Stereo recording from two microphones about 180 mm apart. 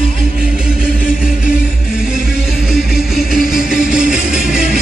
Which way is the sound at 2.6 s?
5° right (ahead or behind).